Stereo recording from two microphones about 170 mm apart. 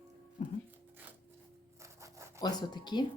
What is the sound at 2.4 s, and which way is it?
Speech, 25° left (ahead or behind).